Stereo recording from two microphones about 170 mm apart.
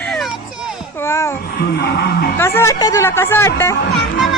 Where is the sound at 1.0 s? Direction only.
15° left (ahead or behind).